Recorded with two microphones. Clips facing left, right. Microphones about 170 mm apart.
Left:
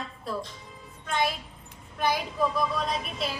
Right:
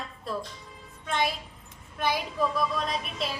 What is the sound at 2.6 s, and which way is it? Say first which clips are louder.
Speech: left 1 dB; centre (ahead or behind).